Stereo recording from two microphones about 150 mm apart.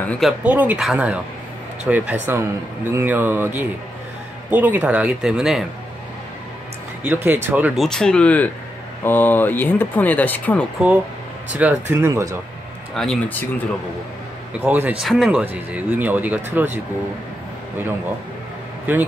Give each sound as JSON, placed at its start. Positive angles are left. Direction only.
{"t": 0.2, "sound": "speech", "side_deg": -10}
{"t": 7.0, "sound": "speech", "side_deg": -10}
{"t": 7.7, "sound": "speech", "side_deg": 0}
{"t": 11.5, "sound": "speech", "side_deg": -15}
{"t": 12.9, "sound": "speech", "side_deg": 5}
{"t": 14.6, "sound": "speech", "side_deg": -10}
{"t": 18.9, "sound": "speech", "side_deg": -15}